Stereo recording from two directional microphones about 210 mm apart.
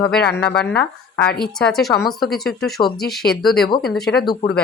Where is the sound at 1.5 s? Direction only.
Centre (ahead or behind).